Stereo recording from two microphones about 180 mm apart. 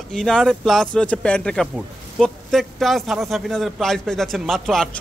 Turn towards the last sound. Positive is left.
turn(degrees=0)  # may be behind; listen again after turning